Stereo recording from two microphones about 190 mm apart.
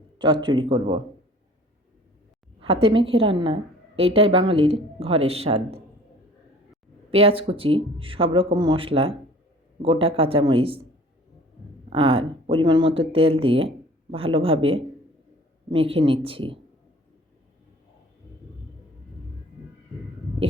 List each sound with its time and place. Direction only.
0.2 s a woman's voice: 25° right (ahead or behind)
2.6 s a woman's voice: 30° right (ahead or behind)
7.1 s a woman's voice: 30° right (ahead or behind)
11.9 s a woman's voice: 30° right (ahead or behind)